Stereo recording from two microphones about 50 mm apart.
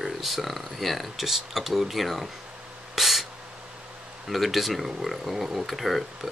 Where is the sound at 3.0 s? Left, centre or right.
Centre.